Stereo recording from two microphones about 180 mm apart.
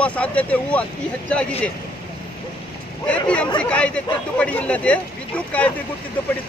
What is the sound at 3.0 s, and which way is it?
Speech, 5° left (ahead or behind).